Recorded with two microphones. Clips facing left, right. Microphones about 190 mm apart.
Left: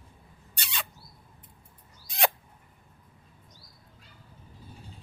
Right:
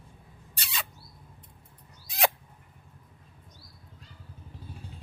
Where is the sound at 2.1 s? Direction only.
Centre (ahead or behind).